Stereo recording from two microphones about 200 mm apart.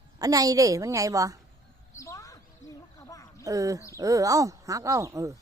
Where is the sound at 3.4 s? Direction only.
15° right (ahead or behind).